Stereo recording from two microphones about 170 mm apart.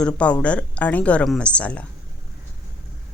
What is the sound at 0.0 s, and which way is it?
A woman's voice, 5° left (ahead or behind).